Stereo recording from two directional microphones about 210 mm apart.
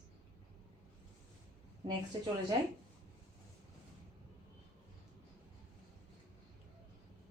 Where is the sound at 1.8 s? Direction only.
20° right (ahead or behind).